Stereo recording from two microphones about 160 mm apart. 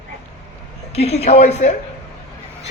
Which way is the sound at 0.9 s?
40° left (ahead or behind).